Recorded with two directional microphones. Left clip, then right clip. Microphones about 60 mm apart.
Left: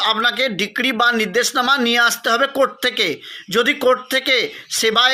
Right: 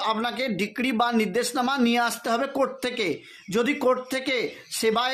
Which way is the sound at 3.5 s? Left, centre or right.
Right.